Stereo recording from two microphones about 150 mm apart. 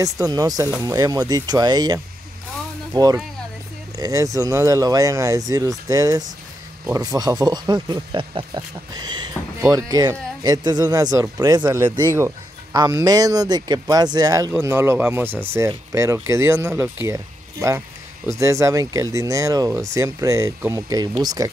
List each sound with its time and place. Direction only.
0.0 s speech: 20° right (ahead or behind)
11.6 s speech: 15° right (ahead or behind)